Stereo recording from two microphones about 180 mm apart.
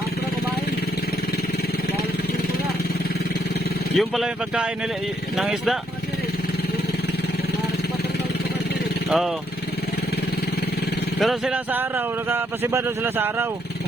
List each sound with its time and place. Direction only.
3.9 s speech: centre (ahead or behind)
9.0 s speech: centre (ahead or behind)
11.2 s speech: centre (ahead or behind)